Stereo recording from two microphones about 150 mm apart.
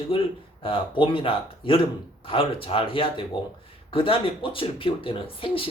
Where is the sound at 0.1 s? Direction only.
35° left (ahead or behind).